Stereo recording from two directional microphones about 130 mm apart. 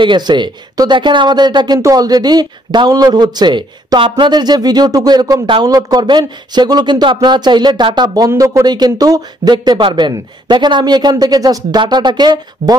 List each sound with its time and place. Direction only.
0.0 s speech: 35° right (ahead or behind)